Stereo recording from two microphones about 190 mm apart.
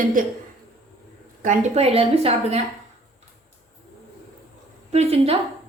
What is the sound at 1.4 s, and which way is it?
A woman's voice, 35° right (ahead or behind).